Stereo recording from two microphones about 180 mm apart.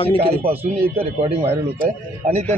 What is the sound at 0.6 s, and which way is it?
A man's voice, 30° right (ahead or behind).